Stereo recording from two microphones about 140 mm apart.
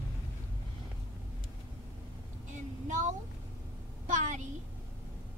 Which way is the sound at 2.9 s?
65° right (ahead or behind).